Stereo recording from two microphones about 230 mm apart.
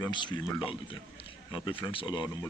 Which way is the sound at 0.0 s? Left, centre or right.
Centre.